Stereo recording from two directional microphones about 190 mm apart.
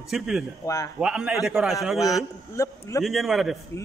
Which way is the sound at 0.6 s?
20° left (ahead or behind).